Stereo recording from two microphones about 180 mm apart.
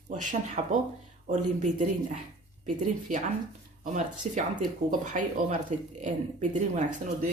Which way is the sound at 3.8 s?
45° right (ahead or behind).